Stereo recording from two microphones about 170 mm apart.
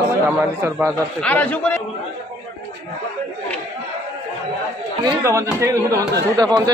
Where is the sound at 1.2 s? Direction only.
10° left (ahead or behind).